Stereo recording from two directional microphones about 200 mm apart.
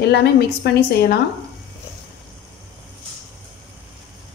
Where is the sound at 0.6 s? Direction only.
55° left (ahead or behind).